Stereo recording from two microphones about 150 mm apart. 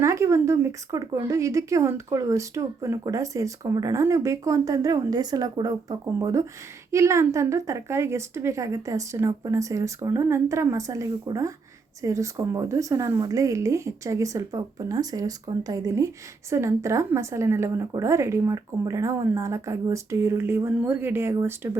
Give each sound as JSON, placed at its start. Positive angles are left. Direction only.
{"t": 0.0, "sound": "speech", "side_deg": -20}